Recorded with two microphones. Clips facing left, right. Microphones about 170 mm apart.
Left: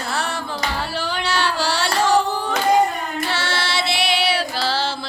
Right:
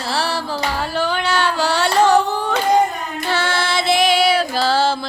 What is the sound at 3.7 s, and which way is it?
Music, 45° right (ahead or behind).